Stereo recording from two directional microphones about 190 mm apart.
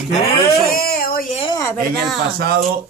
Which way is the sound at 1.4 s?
20° left (ahead or behind).